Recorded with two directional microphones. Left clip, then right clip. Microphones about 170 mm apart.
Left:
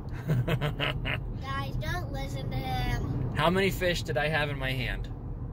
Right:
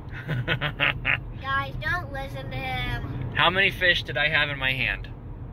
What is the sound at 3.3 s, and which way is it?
Speech, 30° left (ahead or behind).